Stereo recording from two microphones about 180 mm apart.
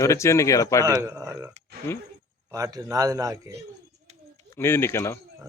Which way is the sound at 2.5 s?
20° right (ahead or behind).